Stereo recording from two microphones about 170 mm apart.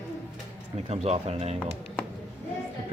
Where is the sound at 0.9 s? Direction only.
40° right (ahead or behind).